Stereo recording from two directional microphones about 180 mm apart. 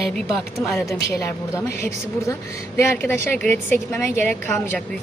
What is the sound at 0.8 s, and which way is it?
A woman's voice, 15° left (ahead or behind).